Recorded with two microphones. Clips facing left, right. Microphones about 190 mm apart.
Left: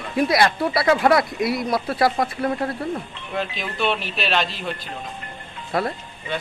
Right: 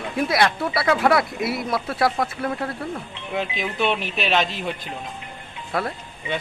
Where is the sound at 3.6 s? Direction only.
15° right (ahead or behind).